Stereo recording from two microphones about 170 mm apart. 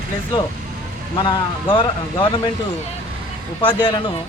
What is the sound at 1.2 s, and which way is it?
Speech, 30° left (ahead or behind).